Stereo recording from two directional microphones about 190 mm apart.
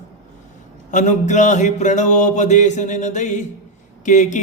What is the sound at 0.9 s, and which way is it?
Mantra, 40° left (ahead or behind).